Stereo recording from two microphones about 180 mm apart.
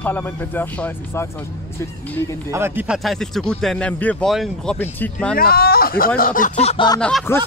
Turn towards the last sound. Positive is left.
turn(degrees=10)  # may be behind; listen again after turning